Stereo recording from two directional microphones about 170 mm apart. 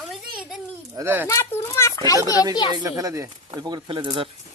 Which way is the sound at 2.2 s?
20° left (ahead or behind).